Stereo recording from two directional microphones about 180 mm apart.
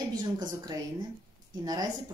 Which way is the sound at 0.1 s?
25° right (ahead or behind).